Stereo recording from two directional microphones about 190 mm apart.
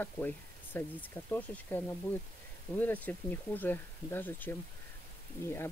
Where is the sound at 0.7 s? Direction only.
10° left (ahead or behind).